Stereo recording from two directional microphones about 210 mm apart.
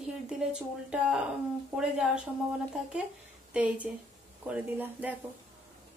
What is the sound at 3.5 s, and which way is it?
A woman's voice, 5° right (ahead or behind).